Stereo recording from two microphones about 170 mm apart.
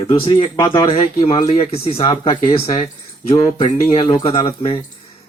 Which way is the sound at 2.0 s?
25° left (ahead or behind).